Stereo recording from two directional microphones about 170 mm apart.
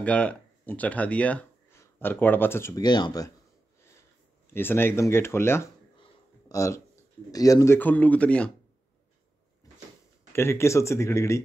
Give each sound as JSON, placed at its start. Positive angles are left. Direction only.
{"t": 0.0, "sound": "speech", "side_deg": 10}
{"t": 2.8, "sound": "speech", "side_deg": 25}
{"t": 4.6, "sound": "speech", "side_deg": 15}
{"t": 10.3, "sound": "speech", "side_deg": 15}